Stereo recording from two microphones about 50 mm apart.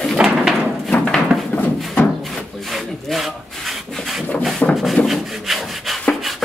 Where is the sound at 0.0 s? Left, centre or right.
Centre.